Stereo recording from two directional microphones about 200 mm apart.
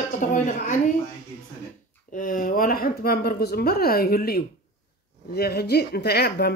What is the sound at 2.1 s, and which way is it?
Speech, 40° left (ahead or behind).